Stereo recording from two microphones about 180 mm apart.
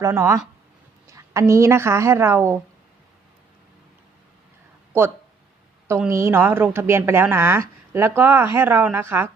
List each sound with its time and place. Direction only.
0.0 s a woman's voice: 15° right (ahead or behind)
6.1 s speech: 15° right (ahead or behind)